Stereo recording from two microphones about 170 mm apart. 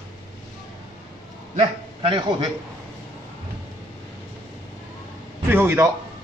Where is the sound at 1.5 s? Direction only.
35° right (ahead or behind).